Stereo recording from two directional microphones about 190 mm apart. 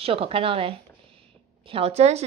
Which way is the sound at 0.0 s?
30° right (ahead or behind).